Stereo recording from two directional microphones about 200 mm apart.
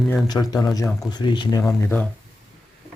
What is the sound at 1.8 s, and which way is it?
Speech, 10° left (ahead or behind).